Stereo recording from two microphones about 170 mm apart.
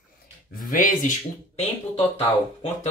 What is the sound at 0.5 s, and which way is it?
Speech, 55° left (ahead or behind).